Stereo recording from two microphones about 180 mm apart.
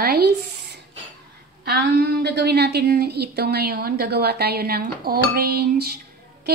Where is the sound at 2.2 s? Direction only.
65° right (ahead or behind).